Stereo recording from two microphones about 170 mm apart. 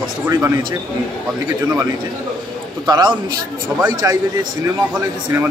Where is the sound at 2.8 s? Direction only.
25° right (ahead or behind).